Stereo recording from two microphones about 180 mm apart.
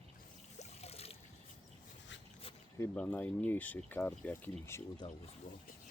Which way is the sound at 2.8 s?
10° left (ahead or behind).